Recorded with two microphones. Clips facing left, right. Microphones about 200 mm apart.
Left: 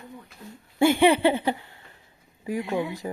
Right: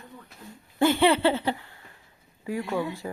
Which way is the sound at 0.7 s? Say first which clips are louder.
Left 2 dB; 10° left (ahead or behind).